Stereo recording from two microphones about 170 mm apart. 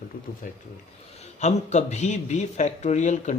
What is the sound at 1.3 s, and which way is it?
A man's voice, 40° left (ahead or behind).